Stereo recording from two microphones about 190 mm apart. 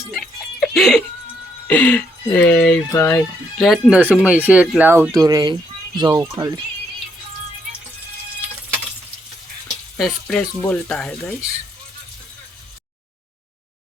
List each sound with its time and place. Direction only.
0.1 s music: 5° left (ahead or behind)
1.6 s speech: 10° left (ahead or behind); by 6.6 s 15° right (ahead or behind)
10.0 s speech: 5° left (ahead or behind)